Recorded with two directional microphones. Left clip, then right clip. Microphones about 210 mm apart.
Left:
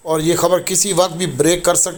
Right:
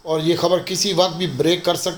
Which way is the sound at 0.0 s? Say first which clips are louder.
Left 3 dB; 20° left (ahead or behind).